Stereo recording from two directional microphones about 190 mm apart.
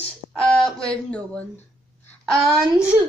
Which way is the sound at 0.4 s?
5° left (ahead or behind).